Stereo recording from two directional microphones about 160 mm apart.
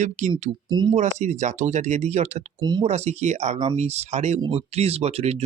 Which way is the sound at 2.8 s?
45° right (ahead or behind).